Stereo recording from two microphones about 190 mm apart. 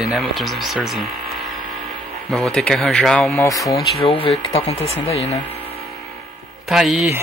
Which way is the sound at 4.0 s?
30° left (ahead or behind).